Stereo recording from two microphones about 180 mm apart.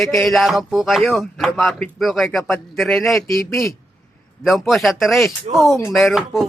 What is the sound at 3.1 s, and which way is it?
Speech, 15° left (ahead or behind).